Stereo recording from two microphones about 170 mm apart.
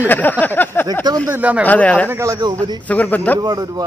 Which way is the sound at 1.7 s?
10° left (ahead or behind).